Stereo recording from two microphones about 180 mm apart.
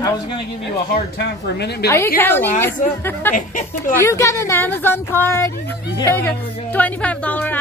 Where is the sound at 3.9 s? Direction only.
15° left (ahead or behind).